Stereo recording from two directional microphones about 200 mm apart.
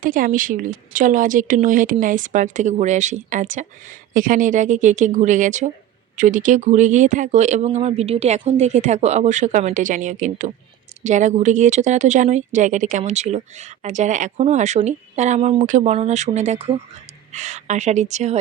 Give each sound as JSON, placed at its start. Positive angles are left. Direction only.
{"t": 0.0, "sound": "speech", "side_deg": -40}